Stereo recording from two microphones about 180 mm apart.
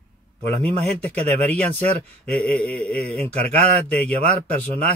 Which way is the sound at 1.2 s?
35° right (ahead or behind).